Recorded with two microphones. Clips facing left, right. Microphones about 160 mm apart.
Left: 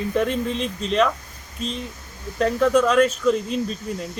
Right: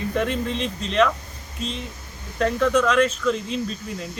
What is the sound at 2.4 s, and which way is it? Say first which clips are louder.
Speech: left 2 dB; 5° left (ahead or behind).